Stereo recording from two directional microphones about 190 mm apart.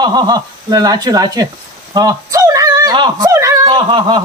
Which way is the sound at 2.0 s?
20° right (ahead or behind).